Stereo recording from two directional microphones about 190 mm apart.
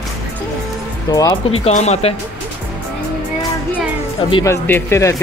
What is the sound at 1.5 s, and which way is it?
Speech, 35° left (ahead or behind).